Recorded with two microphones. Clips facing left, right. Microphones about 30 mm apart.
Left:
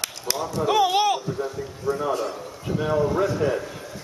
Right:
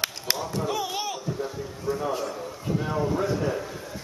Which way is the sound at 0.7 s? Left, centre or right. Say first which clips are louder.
Left 14 dB; left.